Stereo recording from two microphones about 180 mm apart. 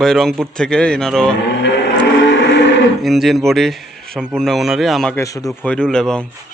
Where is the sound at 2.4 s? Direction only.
80° left.